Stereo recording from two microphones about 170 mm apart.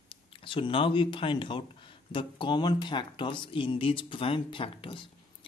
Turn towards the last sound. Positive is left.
turn(degrees=30)  # may be behind; listen again after turning